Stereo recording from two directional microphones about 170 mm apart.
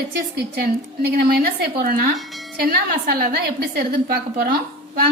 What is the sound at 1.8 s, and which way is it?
A woman's voice, 55° right (ahead or behind).